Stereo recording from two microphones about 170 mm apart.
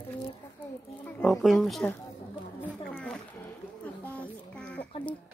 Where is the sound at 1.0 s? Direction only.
Centre (ahead or behind).